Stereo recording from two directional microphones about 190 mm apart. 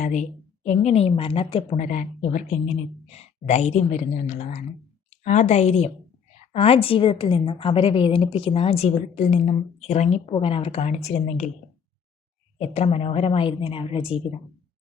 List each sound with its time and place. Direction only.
0.0 s a woman's voice: 40° left (ahead or behind)
12.5 s a woman's voice: 35° left (ahead or behind)